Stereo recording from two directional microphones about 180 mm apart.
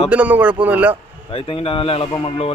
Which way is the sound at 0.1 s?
10° right (ahead or behind).